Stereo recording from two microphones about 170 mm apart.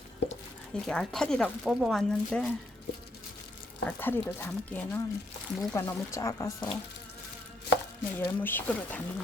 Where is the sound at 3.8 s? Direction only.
10° left (ahead or behind).